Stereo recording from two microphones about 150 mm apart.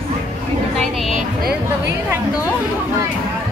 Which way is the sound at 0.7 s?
Centre (ahead or behind).